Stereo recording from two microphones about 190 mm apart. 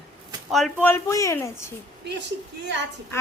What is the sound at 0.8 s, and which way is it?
Speech, 15° left (ahead or behind).